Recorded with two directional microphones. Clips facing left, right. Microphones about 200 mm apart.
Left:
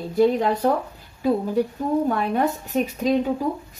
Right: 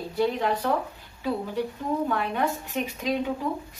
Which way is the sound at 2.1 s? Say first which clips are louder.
Left 5 dB; 40° left (ahead or behind).